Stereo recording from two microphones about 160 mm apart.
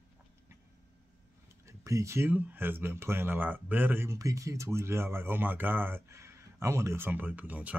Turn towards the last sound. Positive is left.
turn(degrees=-10)  # may be behind; listen again after turning